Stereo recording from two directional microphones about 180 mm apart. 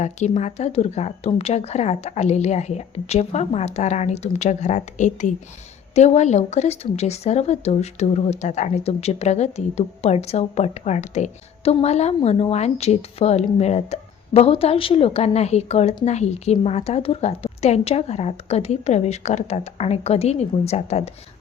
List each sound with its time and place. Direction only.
0.0 s a woman's voice: 40° left (ahead or behind)